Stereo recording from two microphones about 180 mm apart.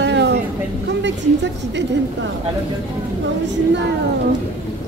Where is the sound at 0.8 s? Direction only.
80° right.